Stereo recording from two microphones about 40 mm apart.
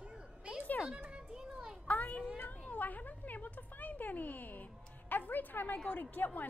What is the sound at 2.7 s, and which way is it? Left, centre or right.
A woman's voice, left.